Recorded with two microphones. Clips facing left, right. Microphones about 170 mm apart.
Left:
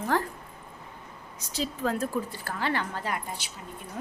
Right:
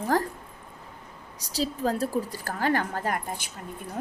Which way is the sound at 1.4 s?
35° right (ahead or behind).